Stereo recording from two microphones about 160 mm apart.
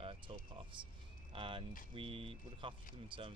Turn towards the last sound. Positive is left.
turn(degrees=-30)  # may be behind; listen again after turning